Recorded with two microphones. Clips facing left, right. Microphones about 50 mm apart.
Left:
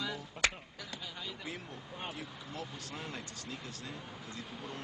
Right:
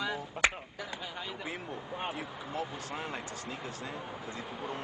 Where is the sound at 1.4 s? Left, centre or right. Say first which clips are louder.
Right 5 dB; right.